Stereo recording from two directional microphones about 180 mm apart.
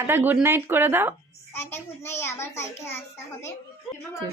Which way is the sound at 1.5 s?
15° left (ahead or behind).